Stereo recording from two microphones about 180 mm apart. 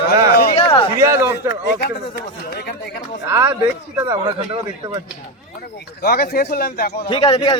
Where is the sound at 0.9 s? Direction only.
15° right (ahead or behind).